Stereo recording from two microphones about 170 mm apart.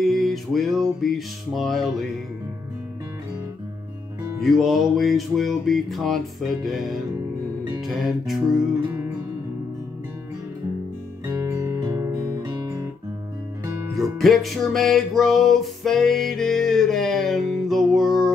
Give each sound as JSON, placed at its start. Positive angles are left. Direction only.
{"t": 0.0, "sound": "music", "side_deg": 0}
{"t": 4.4, "sound": "music", "side_deg": 0}
{"t": 11.2, "sound": "guitar", "side_deg": -20}
{"t": 13.9, "sound": "music", "side_deg": 0}